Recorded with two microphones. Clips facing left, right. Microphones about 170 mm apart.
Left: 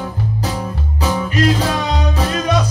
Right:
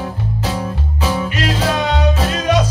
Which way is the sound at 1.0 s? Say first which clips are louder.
Left 3 dB; 35° left (ahead or behind).